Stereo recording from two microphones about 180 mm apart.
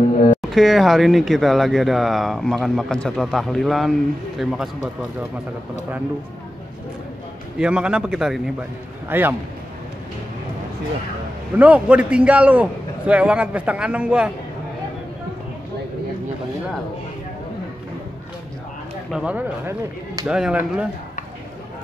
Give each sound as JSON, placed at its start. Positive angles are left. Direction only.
{"t": 0.4, "sound": "speech", "side_deg": 0}
{"t": 7.5, "sound": "a man's voice", "side_deg": -5}
{"t": 11.5, "sound": "a man's voice", "side_deg": -10}
{"t": 19.0, "sound": "a man's voice", "side_deg": -5}